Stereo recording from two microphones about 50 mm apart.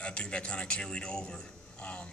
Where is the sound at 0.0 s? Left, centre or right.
Left.